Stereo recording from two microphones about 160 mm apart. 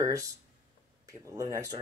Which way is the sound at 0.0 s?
20° right (ahead or behind).